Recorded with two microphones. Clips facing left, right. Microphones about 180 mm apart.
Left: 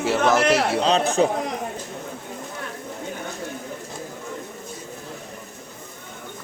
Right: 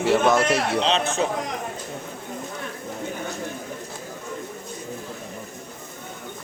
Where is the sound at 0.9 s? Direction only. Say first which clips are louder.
Left 3 dB; 35° left (ahead or behind).